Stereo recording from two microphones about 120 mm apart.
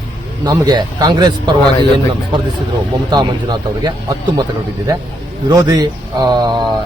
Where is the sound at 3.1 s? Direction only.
35° right (ahead or behind).